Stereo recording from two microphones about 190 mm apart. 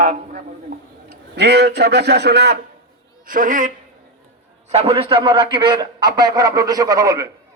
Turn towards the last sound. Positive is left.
turn(degrees=-15)  # may be behind; listen again after turning